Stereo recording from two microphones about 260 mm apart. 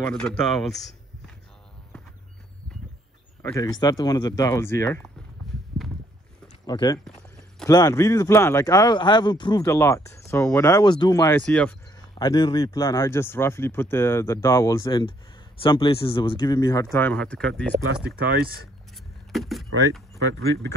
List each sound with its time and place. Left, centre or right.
0.0 s speech: centre
3.4 s speech: centre
6.6 s speech: centre
7.1 s a sound: centre
7.7 s speech: centre
12.2 s speech: centre
18.0 s speech: right
19.3 s speech: centre